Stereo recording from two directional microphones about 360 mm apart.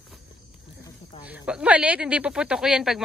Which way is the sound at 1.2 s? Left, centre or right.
Centre.